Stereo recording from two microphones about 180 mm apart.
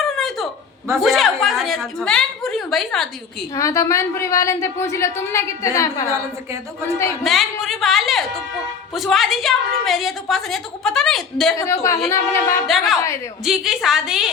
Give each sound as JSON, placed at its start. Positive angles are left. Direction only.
{"t": 0.0, "sound": "a sound", "side_deg": 0}
{"t": 0.9, "sound": "a woman's voice", "side_deg": 0}
{"t": 3.5, "sound": "a woman's voice", "side_deg": 15}
{"t": 7.3, "sound": "a woman's voice", "side_deg": 0}
{"t": 11.5, "sound": "a woman's voice", "side_deg": 15}
{"t": 12.6, "sound": "a woman's voice", "side_deg": 0}